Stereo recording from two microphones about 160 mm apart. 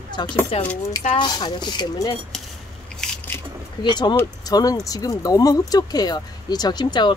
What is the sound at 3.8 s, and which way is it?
Speech, 30° left (ahead or behind).